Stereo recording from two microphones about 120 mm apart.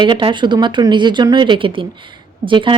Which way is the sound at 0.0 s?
45° right (ahead or behind).